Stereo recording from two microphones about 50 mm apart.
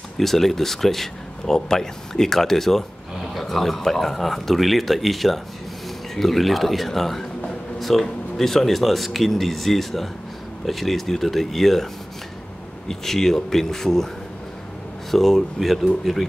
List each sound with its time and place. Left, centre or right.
0.2 s speech: centre
15.0 s speech: centre